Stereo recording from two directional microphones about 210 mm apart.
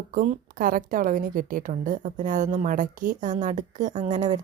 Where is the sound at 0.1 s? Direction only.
40° right (ahead or behind).